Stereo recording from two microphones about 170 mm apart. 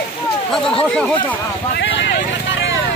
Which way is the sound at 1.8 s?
90° left.